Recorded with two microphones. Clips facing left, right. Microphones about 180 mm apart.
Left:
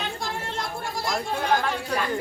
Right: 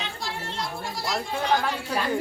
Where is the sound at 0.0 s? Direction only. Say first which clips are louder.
Left 3 dB; 50° left (ahead or behind).